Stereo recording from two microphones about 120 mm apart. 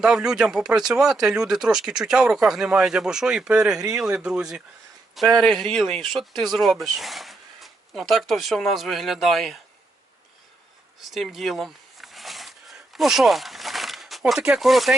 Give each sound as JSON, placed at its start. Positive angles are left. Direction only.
{"t": 0.0, "sound": "speech", "side_deg": -5}
{"t": 3.8, "sound": "speech", "side_deg": -25}
{"t": 4.0, "sound": "speech", "side_deg": -5}
{"t": 11.0, "sound": "a sound", "side_deg": 0}